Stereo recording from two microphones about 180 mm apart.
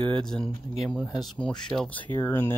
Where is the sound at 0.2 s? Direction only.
5° left (ahead or behind).